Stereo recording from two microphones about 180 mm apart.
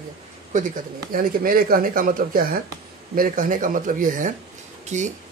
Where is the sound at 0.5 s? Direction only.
45° right (ahead or behind).